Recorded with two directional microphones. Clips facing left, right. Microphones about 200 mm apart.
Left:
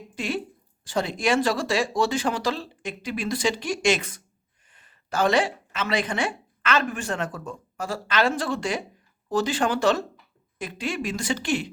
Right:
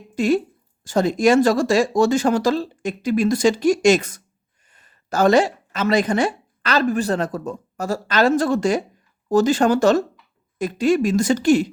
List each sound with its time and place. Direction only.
0.2 s a woman's voice: 40° right (ahead or behind)